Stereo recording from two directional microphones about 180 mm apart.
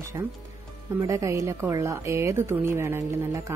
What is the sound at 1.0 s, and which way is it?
A woman's voice, 15° right (ahead or behind).